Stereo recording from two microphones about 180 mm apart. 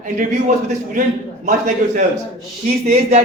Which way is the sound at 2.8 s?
40° right (ahead or behind).